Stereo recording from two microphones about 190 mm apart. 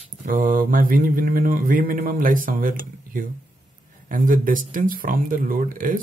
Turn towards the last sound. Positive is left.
turn(degrees=-45)  # may be behind; listen again after turning